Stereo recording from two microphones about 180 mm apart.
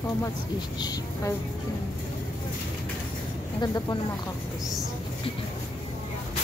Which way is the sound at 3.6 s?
20° left (ahead or behind).